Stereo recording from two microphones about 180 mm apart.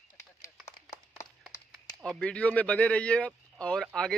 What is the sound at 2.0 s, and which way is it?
A man's voice, 5° left (ahead or behind).